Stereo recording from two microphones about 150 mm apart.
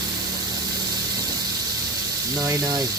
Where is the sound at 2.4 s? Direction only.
25° right (ahead or behind).